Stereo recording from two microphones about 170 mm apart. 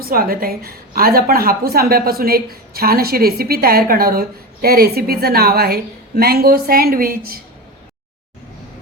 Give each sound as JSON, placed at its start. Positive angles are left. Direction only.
{"t": 0.0, "sound": "a woman's voice", "side_deg": -60}